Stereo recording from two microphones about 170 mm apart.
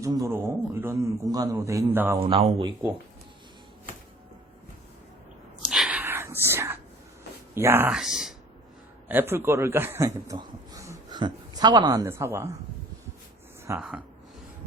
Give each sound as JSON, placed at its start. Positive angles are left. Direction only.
{"t": 0.0, "sound": "a man's voice", "side_deg": -20}
{"t": 2.2, "sound": "speech", "side_deg": -30}
{"t": 5.6, "sound": "a sound", "side_deg": -5}
{"t": 6.0, "sound": "whispering", "side_deg": -15}
{"t": 7.5, "sound": "speech", "side_deg": -15}
{"t": 9.0, "sound": "a man's voice", "side_deg": -15}
{"t": 13.7, "sound": "speech", "side_deg": -5}